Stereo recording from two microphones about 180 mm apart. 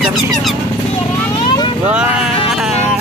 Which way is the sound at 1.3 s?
25° left (ahead or behind).